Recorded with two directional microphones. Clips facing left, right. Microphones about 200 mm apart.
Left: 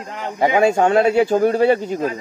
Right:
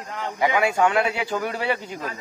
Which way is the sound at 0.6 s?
45° left (ahead or behind).